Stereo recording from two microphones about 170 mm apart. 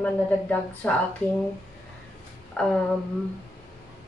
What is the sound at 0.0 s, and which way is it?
A woman's voice, 5° left (ahead or behind).